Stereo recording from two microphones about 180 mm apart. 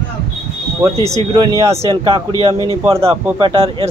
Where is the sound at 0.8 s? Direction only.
15° right (ahead or behind).